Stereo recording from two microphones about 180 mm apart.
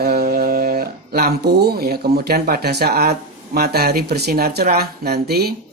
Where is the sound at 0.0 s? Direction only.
60° right (ahead or behind).